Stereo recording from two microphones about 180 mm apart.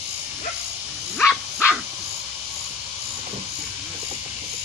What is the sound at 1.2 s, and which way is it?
Dog, 5° left (ahead or behind).